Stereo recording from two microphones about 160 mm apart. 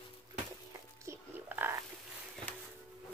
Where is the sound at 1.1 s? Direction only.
10° right (ahead or behind).